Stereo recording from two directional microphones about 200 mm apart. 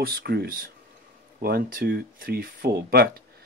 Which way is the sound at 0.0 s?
50° right (ahead or behind).